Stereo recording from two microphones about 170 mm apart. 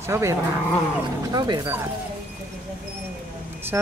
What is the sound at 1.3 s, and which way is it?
Speech, 25° right (ahead or behind).